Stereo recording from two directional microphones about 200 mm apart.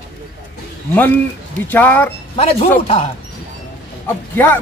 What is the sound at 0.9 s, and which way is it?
Speech, 10° left (ahead or behind).